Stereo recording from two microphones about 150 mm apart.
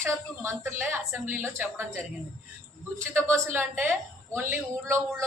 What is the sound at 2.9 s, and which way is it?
A woman's voice, 15° right (ahead or behind).